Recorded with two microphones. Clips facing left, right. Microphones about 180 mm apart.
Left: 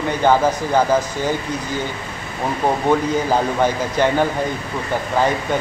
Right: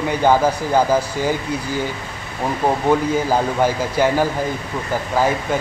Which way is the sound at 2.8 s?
10° right (ahead or behind).